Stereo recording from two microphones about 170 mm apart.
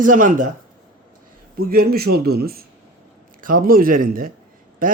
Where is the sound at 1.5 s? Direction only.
65° right (ahead or behind).